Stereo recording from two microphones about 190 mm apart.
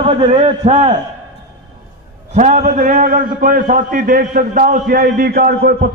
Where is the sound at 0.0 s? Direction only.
30° right (ahead or behind).